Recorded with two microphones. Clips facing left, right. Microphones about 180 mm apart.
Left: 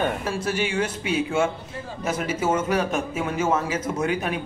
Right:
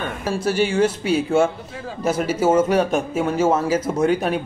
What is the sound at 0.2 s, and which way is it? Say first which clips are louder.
A man's voice: right 5 dB; 35° right (ahead or behind).